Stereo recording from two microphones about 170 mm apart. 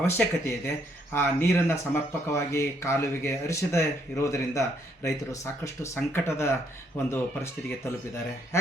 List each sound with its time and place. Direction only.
0.0 s speech: 15° left (ahead or behind)